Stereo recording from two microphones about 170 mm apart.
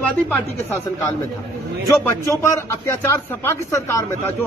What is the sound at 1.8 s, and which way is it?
Speech, 15° left (ahead or behind).